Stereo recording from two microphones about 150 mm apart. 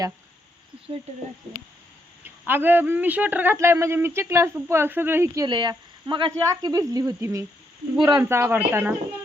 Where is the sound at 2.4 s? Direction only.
15° right (ahead or behind).